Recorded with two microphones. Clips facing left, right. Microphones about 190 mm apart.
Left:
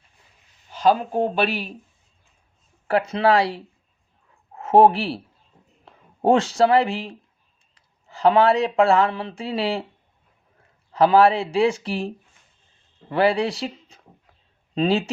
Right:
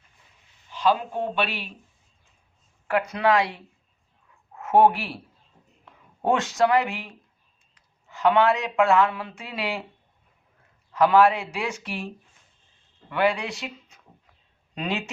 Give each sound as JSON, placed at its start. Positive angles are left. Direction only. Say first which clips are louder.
{"t": 0.7, "sound": "speech", "louder": "left 4 dB", "side_deg": 40}
{"t": 2.8, "sound": "speech", "louder": "left 3 dB", "side_deg": 30}
{"t": 10.9, "sound": "speech", "louder": "left 3 dB", "side_deg": 30}